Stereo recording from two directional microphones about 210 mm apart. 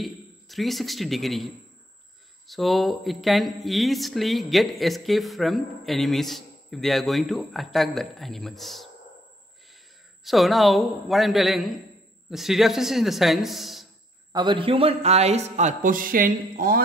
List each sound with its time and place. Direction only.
0.0 s a man's voice: centre (ahead or behind)
10.2 s speech: centre (ahead or behind)
14.3 s a man's voice: 20° right (ahead or behind); by 16.8 s 45° right (ahead or behind)